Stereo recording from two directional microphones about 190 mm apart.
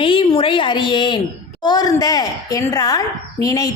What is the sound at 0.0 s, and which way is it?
A woman's voice, 25° left (ahead or behind).